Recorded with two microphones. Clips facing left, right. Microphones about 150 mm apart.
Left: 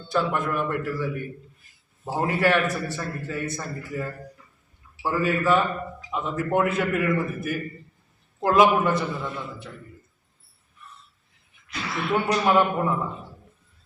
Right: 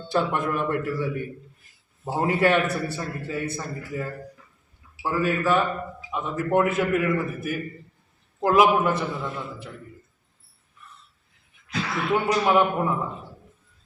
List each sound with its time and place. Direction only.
0.1 s speech: 25° right (ahead or behind)
2.0 s a man's voice: 20° right (ahead or behind)
5.0 s a man's voice: 5° right (ahead or behind)
12.1 s a man's voice: 10° right (ahead or behind)